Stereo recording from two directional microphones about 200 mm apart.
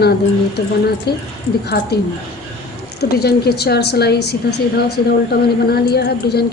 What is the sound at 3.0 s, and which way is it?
A woman's voice, 55° left (ahead or behind).